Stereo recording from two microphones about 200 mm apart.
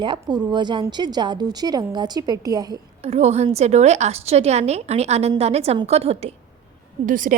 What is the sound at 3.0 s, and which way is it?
A woman's voice, 30° right (ahead or behind).